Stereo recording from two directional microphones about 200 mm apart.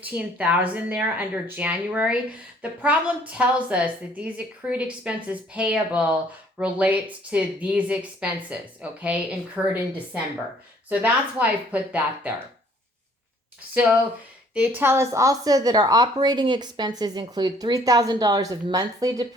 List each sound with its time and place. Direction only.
0.0 s a woman's voice: 5° right (ahead or behind)
10.8 s speech: 5° right (ahead or behind)
13.7 s a woman's voice: 5° right (ahead or behind)